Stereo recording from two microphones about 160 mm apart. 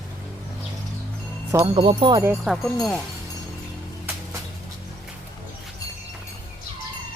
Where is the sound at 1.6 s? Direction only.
30° right (ahead or behind).